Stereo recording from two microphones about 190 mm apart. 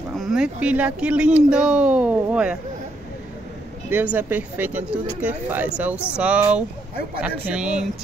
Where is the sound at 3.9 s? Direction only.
10° right (ahead or behind).